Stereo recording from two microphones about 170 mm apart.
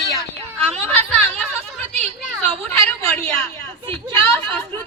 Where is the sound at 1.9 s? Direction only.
40° right (ahead or behind).